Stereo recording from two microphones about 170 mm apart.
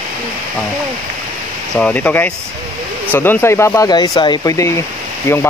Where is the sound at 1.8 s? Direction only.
5° left (ahead or behind).